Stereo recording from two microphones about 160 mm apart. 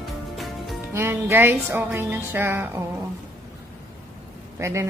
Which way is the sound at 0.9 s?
15° right (ahead or behind).